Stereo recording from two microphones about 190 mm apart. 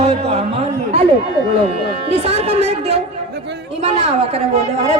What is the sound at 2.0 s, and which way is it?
Speech, 30° right (ahead or behind).